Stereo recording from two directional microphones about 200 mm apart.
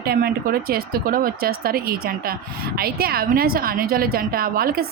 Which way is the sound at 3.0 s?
50° right (ahead or behind).